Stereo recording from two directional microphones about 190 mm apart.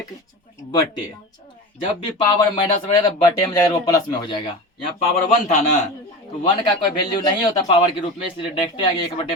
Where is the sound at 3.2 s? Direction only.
20° left (ahead or behind).